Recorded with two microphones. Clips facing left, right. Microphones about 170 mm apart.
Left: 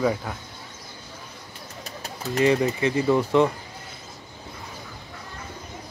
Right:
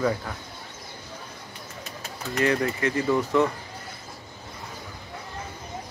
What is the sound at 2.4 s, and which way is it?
Speech, 20° left (ahead or behind).